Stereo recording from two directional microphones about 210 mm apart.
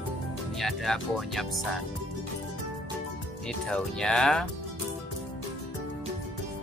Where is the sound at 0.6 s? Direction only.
Centre (ahead or behind).